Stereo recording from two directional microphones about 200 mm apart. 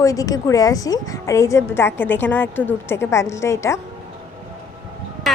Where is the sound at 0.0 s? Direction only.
15° left (ahead or behind).